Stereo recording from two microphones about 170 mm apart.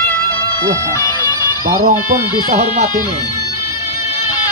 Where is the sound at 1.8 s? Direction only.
45° right (ahead or behind).